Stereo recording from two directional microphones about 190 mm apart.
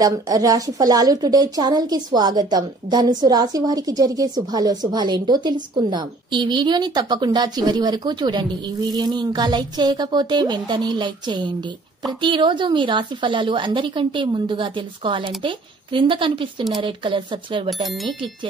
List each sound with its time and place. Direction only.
0.0 s a woman's voice: 20° right (ahead or behind)
17.8 s speech: centre (ahead or behind)